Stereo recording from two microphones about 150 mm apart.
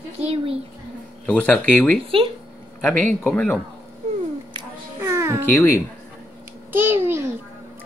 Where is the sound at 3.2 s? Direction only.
10° left (ahead or behind).